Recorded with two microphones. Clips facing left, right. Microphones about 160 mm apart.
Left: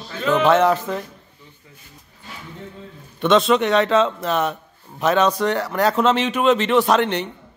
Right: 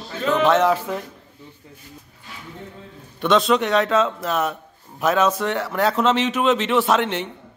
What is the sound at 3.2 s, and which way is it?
Speech, centre (ahead or behind).